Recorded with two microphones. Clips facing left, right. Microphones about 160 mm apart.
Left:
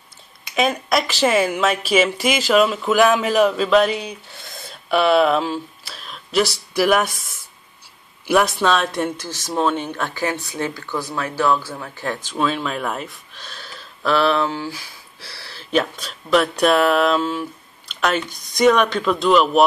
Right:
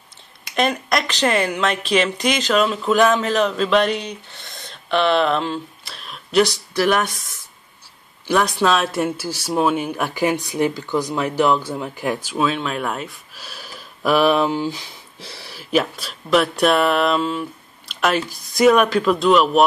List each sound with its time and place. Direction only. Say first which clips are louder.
0.6 s speech: left 1 dB; 5° left (ahead or behind)
8.3 s speech: left 1 dB; 5° left (ahead or behind)